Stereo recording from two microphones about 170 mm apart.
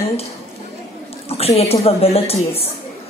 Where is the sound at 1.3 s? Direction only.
35° left (ahead or behind).